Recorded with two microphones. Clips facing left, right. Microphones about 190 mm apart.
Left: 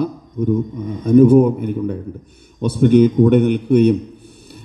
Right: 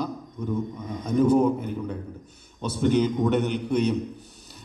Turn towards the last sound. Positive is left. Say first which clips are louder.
# left 11 dB
turn(degrees=55)  # may be behind; listen again after turning